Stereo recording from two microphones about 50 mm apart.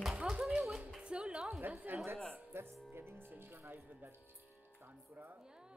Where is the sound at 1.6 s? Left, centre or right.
Right.